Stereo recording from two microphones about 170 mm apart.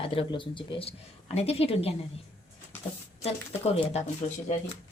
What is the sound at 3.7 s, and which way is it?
Speech, 40° left (ahead or behind).